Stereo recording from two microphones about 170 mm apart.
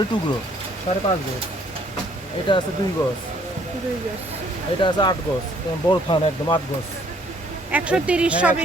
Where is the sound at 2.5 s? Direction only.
30° left (ahead or behind).